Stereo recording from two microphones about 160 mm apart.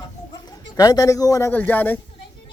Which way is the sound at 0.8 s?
25° left (ahead or behind).